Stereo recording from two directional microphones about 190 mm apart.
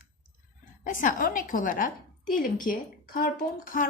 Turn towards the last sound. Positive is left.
turn(degrees=45)  # may be behind; listen again after turning